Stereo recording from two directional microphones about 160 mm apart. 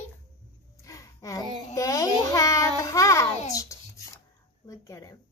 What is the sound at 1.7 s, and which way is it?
A child's voice, 20° left (ahead or behind).